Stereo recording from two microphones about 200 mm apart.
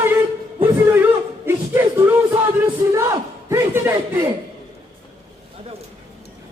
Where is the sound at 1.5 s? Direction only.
10° right (ahead or behind).